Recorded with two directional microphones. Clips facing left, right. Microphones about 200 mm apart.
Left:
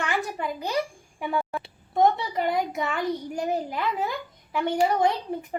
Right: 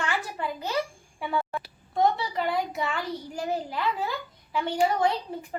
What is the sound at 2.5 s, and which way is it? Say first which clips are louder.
A child's voice: left 2 dB; 20° left (ahead or behind).